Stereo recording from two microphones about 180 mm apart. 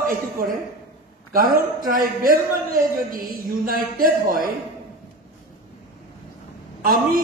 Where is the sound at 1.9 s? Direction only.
50° right (ahead or behind).